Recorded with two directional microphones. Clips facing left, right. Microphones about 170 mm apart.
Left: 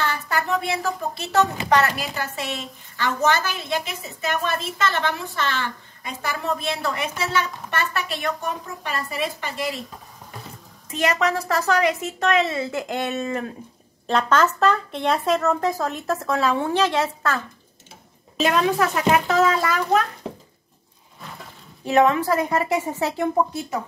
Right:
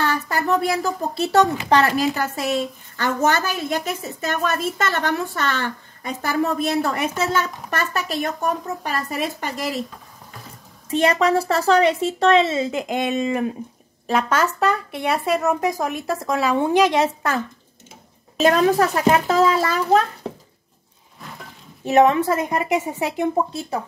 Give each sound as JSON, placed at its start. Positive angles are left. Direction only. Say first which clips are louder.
{"t": 0.0, "sound": "a woman's voice", "louder": "right 3 dB", "side_deg": -40}
{"t": 10.9, "sound": "a woman's voice", "louder": "right 4 dB", "side_deg": -30}
{"t": 18.4, "sound": "a child's voice", "louder": "right 4 dB", "side_deg": -40}
{"t": 21.8, "sound": "a woman's voice", "louder": "right 3 dB", "side_deg": -20}